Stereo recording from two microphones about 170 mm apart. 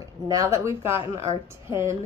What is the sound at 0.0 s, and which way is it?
A woman's voice, 20° right (ahead or behind).